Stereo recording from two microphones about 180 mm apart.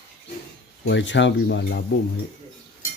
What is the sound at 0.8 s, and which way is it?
Speech, 90° left.